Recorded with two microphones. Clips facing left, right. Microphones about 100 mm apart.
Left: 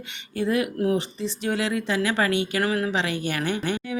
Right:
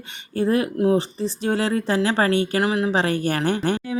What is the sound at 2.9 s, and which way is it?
Speech, 40° right (ahead or behind).